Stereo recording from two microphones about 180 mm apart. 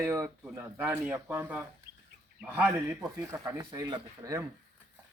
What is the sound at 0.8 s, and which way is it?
Speech, 5° right (ahead or behind).